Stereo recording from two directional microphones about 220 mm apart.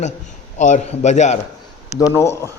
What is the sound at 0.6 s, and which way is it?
Speech, 35° left (ahead or behind).